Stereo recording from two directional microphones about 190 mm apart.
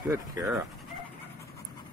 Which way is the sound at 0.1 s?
15° right (ahead or behind).